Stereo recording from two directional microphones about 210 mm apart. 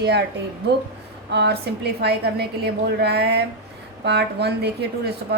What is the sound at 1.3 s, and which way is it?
A woman's voice, 55° right (ahead or behind).